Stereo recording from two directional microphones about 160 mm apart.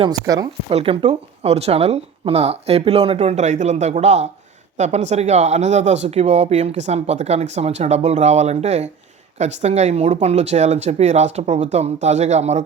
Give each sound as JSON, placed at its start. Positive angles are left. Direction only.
{"t": 0.0, "sound": "speech", "side_deg": -25}
{"t": 0.7, "sound": "speech", "side_deg": -35}